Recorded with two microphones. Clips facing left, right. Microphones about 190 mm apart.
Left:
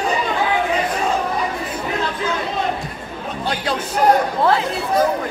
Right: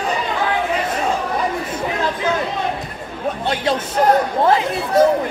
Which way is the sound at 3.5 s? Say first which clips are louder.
Right 2 dB; 25° right (ahead or behind).